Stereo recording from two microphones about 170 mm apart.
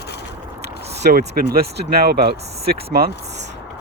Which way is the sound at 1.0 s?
70° right (ahead or behind).